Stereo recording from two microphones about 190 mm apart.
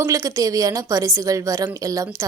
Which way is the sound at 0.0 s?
15° right (ahead or behind).